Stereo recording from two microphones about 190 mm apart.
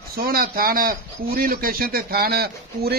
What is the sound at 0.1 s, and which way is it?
A man's voice, 50° right (ahead or behind).